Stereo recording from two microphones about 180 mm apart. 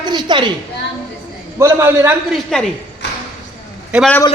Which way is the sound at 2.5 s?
5° left (ahead or behind).